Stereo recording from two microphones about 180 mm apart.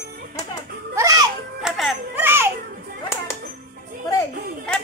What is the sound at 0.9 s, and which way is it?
Music, 20° right (ahead or behind).